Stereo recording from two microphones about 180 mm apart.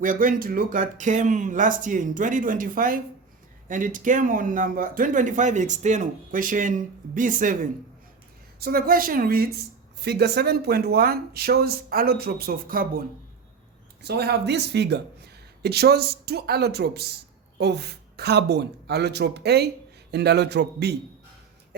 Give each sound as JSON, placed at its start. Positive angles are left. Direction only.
{"t": 0.0, "sound": "speech", "side_deg": -50}
{"t": 14.0, "sound": "speech", "side_deg": -65}